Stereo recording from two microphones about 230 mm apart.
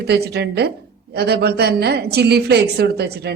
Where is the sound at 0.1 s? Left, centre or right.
Right.